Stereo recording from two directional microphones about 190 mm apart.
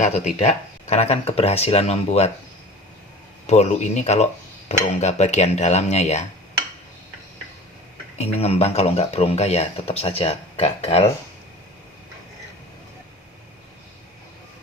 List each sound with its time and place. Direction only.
0.3 s speech: 35° left (ahead or behind)
3.4 s speech: 35° left (ahead or behind)
8.2 s speech: 35° left (ahead or behind)